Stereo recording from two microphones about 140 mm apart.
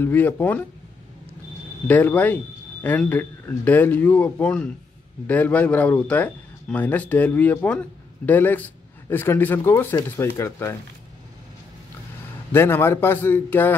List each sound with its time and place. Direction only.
0.0 s speech: 15° left (ahead or behind)
1.9 s a man's voice: 15° left (ahead or behind)
12.5 s speech: 15° left (ahead or behind)